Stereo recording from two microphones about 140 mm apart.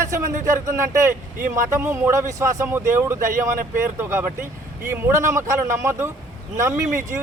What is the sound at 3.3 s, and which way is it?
Speech, 75° right (ahead or behind).